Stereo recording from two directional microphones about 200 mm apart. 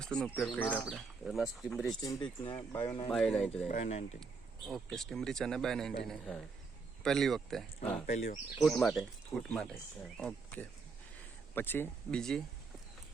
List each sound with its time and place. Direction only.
0.0 s speech: 5° left (ahead or behind)
0.6 s speech: 15° left (ahead or behind)
0.9 s speech: centre (ahead or behind)
2.0 s speech: 20° left (ahead or behind)
3.1 s speech: centre (ahead or behind)
3.7 s speech: 35° left (ahead or behind)
4.7 s speech: centre (ahead or behind)
8.0 s speech: 45° left (ahead or behind)
8.5 s speech: centre (ahead or behind)